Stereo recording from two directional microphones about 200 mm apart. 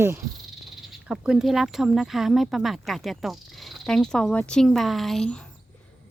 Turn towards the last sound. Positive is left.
turn(degrees=5)  # may be behind; listen again after turning